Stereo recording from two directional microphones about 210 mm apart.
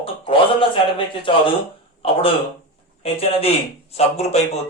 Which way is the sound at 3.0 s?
30° left (ahead or behind).